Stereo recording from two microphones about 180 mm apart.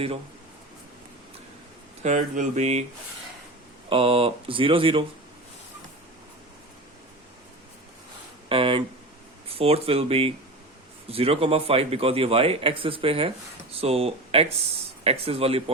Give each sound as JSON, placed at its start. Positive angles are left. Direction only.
{"t": 2.0, "sound": "a man's voice", "side_deg": -40}
{"t": 3.8, "sound": "speech", "side_deg": -30}
{"t": 8.4, "sound": "a man's voice", "side_deg": -30}